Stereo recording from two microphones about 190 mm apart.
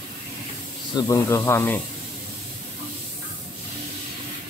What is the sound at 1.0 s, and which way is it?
Speech, 15° left (ahead or behind).